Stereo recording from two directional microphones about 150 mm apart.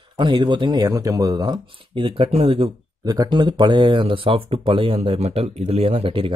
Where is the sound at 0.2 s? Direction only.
30° right (ahead or behind).